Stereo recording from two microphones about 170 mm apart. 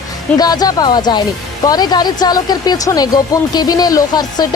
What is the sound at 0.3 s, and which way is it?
Speech, 25° left (ahead or behind).